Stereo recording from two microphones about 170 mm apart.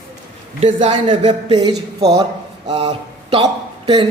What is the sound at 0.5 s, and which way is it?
Speech, 40° right (ahead or behind).